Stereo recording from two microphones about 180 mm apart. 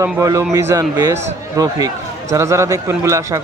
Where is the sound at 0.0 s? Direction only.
15° right (ahead or behind).